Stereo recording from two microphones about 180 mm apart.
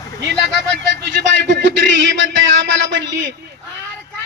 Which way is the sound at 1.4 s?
80° right.